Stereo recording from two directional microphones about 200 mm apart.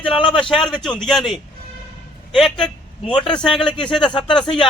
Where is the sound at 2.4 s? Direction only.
Centre (ahead or behind).